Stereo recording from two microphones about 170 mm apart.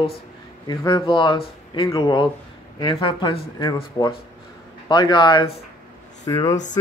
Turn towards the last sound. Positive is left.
turn(degrees=20)  # may be behind; listen again after turning